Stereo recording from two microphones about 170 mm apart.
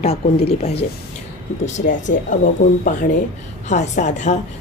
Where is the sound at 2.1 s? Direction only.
55° left (ahead or behind).